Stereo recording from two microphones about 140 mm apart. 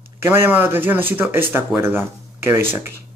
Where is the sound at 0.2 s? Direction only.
15° right (ahead or behind).